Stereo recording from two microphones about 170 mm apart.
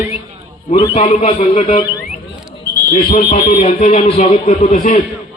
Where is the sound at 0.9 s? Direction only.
45° left (ahead or behind).